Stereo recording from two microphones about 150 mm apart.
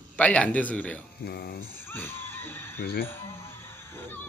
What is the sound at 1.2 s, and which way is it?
Speech, 90° left.